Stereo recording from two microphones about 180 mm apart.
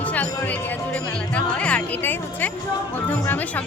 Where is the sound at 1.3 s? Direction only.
5° left (ahead or behind).